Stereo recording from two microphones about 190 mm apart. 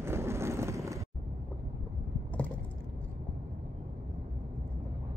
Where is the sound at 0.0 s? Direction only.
15° right (ahead or behind).